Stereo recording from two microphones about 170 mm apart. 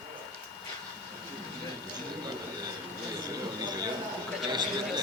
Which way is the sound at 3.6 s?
25° right (ahead or behind).